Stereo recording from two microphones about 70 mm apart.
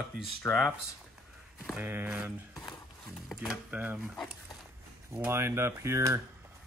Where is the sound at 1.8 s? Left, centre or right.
Right.